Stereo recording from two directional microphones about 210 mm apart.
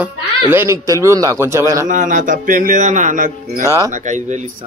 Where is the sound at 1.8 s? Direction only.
40° right (ahead or behind).